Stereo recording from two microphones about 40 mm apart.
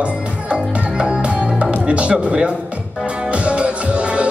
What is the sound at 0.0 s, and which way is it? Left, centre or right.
Music, right.